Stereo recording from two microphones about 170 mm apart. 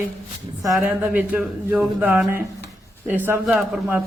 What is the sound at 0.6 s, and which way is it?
Speech, centre (ahead or behind).